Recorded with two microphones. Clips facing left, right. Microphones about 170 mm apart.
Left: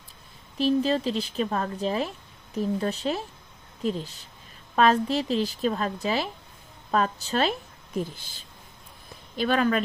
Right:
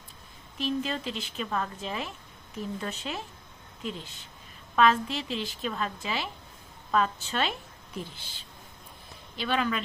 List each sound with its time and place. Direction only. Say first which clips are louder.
0.6 s a woman's voice: left 8 dB; 35° left (ahead or behind)